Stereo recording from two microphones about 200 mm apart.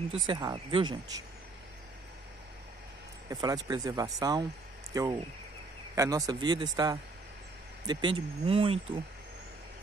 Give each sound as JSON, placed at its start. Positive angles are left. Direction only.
{"t": 0.3, "sound": "speech", "side_deg": -20}
{"t": 3.3, "sound": "speech", "side_deg": -20}